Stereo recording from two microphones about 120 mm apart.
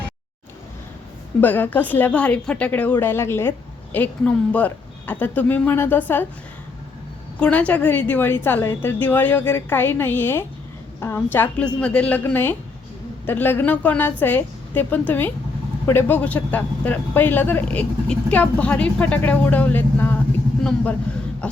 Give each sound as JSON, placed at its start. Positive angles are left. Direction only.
{"t": 1.4, "sound": "speech", "side_deg": 15}
{"t": 7.3, "sound": "speech", "side_deg": 10}
{"t": 21.4, "sound": "speech", "side_deg": 10}